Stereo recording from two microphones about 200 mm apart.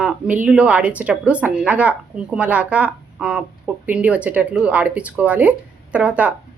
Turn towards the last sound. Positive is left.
turn(degrees=-5)  # may be behind; listen again after turning